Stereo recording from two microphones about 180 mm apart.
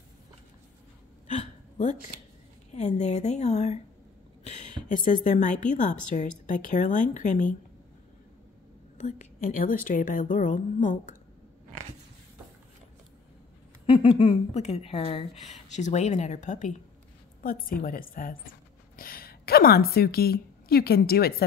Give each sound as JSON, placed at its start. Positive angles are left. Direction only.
{"t": 2.7, "sound": "speech", "side_deg": 40}
{"t": 4.9, "sound": "a woman's voice", "side_deg": 50}
{"t": 8.9, "sound": "a woman's voice", "side_deg": 45}
{"t": 13.8, "sound": "a woman's voice", "side_deg": 30}